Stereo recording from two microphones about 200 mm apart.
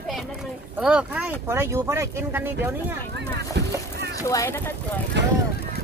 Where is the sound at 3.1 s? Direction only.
55° right (ahead or behind).